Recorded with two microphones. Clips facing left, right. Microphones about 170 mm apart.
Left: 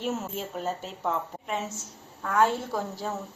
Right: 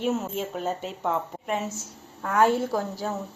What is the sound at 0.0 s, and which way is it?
Speech, centre (ahead or behind).